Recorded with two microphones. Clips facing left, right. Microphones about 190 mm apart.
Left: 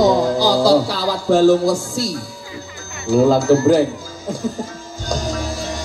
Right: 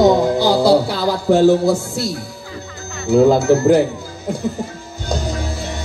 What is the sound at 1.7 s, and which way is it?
Speech, 60° right (ahead or behind).